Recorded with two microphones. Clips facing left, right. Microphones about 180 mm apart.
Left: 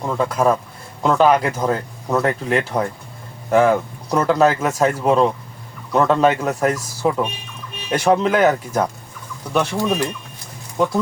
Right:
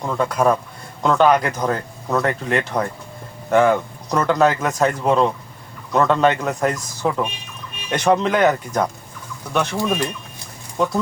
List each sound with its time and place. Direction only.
0.0 s speech: 5° left (ahead or behind)
9.7 s speech: 10° right (ahead or behind)